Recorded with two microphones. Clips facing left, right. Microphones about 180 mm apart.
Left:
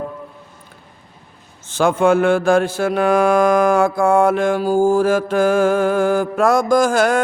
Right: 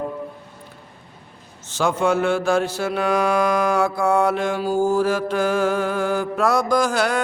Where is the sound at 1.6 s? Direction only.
55° left (ahead or behind).